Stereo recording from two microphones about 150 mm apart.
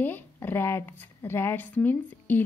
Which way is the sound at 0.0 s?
15° left (ahead or behind).